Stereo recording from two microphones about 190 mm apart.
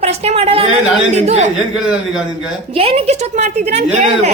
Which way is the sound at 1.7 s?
5° right (ahead or behind).